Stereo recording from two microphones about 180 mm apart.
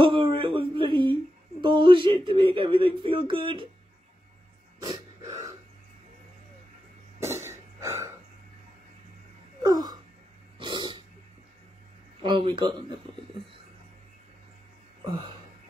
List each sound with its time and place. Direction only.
0.0 s a sound: 30° right (ahead or behind)
1.6 s speech: 25° right (ahead or behind)
4.8 s dog: 20° right (ahead or behind)
7.2 s cough: 15° right (ahead or behind)
9.6 s a sound: 20° right (ahead or behind)
12.2 s speech: 25° right (ahead or behind)
15.0 s speech: 30° right (ahead or behind)